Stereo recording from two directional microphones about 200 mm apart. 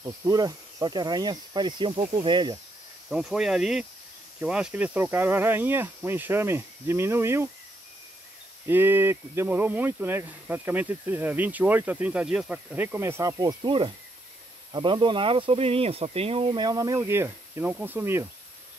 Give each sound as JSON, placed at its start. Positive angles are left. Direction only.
{"t": 0.0, "sound": "speech", "side_deg": -20}
{"t": 3.1, "sound": "speech", "side_deg": 0}
{"t": 8.6, "sound": "speech", "side_deg": -10}